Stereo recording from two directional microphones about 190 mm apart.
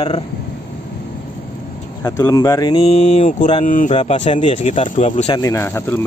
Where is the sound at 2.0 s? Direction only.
15° left (ahead or behind).